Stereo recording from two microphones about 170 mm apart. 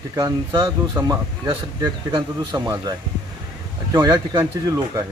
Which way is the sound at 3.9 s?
20° right (ahead or behind).